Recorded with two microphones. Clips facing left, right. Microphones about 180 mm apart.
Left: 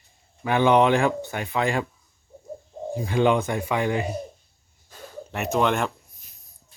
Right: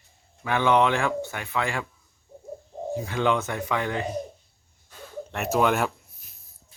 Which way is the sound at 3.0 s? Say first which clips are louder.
Left 5 dB; 15° left (ahead or behind).